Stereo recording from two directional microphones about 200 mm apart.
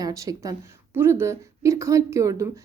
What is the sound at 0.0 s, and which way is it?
A woman's voice, 15° right (ahead or behind).